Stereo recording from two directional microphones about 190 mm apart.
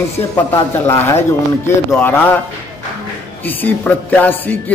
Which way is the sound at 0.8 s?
15° left (ahead or behind).